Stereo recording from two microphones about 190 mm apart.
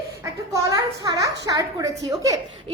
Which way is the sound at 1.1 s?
20° right (ahead or behind).